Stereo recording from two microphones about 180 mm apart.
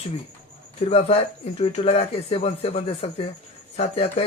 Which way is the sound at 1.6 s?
35° left (ahead or behind).